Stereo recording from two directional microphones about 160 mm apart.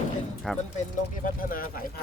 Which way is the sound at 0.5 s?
Centre (ahead or behind).